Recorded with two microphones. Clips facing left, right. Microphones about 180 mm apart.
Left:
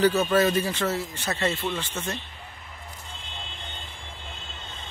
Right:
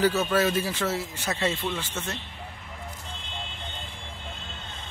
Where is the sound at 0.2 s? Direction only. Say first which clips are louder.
Left 2 dB; 5° right (ahead or behind).